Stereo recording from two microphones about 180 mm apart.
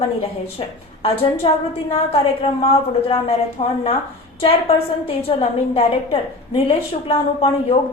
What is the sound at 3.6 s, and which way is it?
A woman's voice, 35° left (ahead or behind).